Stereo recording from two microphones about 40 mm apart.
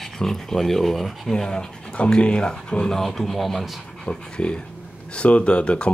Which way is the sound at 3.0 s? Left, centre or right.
Centre.